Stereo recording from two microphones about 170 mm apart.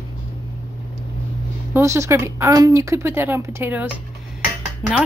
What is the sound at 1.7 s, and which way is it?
Speech, 15° right (ahead or behind).